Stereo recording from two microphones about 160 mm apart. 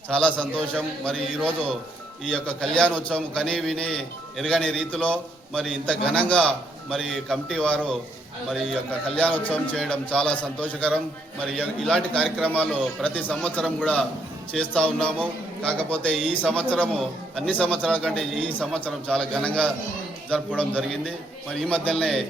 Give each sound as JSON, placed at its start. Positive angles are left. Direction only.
{"t": 0.1, "sound": "a man's voice", "side_deg": 5}
{"t": 8.4, "sound": "a man's voice", "side_deg": -5}